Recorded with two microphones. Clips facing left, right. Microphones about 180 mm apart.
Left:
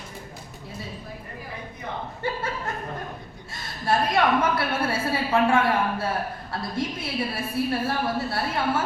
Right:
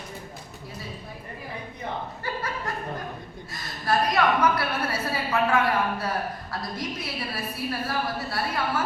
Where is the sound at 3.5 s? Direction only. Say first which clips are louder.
Left 1 dB; 25° left (ahead or behind).